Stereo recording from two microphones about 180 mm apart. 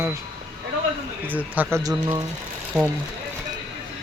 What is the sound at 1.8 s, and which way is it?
Speech, 20° right (ahead or behind).